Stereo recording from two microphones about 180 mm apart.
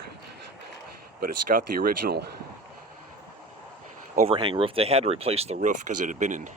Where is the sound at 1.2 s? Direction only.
55° right (ahead or behind).